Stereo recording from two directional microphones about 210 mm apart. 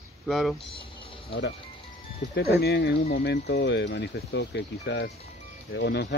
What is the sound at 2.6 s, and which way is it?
Speech, 50° left (ahead or behind).